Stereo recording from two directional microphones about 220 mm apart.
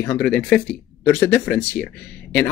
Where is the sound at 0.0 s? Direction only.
5° left (ahead or behind).